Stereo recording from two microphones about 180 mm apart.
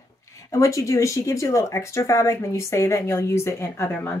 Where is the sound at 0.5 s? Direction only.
15° left (ahead or behind).